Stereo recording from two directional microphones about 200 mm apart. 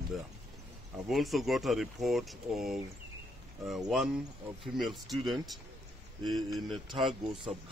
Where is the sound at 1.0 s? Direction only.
Centre (ahead or behind).